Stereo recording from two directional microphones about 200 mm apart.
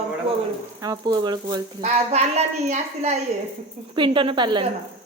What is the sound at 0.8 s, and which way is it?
Speech, 20° right (ahead or behind).